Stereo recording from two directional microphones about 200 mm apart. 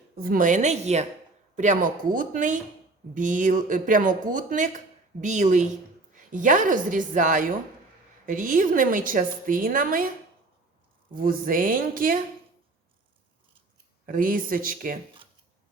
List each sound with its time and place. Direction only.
0.2 s a woman's voice: 45° right (ahead or behind)
11.1 s a woman's voice: 45° right (ahead or behind)
14.1 s a woman's voice: 45° right (ahead or behind)